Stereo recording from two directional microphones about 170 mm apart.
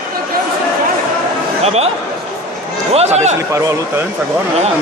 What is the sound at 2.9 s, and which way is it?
Run, 40° right (ahead or behind).